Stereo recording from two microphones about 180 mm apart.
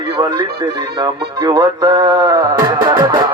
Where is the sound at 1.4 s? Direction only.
20° right (ahead or behind).